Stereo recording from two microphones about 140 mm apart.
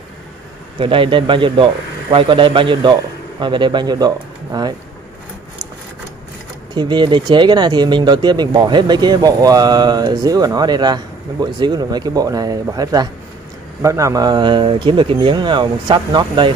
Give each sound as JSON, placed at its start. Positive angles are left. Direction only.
{"t": 0.7, "sound": "speech", "side_deg": -40}
{"t": 6.7, "sound": "speech", "side_deg": -30}